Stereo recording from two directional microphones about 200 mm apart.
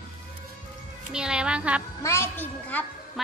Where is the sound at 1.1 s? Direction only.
5° right (ahead or behind).